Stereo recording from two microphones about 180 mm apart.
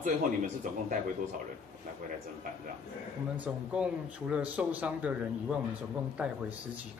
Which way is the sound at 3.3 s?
5° right (ahead or behind).